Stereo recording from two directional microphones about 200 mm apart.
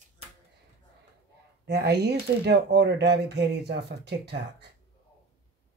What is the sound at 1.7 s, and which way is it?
Speech, 55° right (ahead or behind).